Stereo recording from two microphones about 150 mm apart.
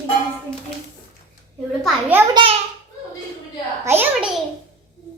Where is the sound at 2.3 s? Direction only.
35° right (ahead or behind).